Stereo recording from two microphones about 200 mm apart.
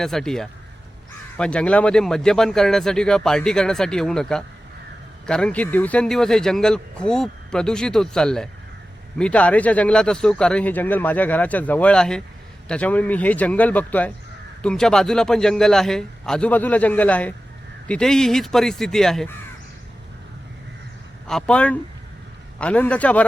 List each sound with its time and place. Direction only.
0.0 s a man's voice: centre (ahead or behind)
21.2 s a man's voice: 5° left (ahead or behind)